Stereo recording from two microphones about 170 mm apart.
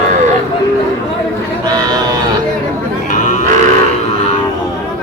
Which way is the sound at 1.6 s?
20° right (ahead or behind).